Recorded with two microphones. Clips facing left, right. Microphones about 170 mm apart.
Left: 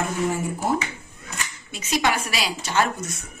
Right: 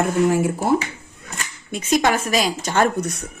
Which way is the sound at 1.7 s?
50° right (ahead or behind).